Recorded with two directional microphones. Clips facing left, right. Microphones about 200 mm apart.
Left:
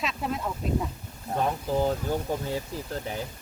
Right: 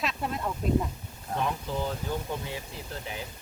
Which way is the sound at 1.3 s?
40° left (ahead or behind).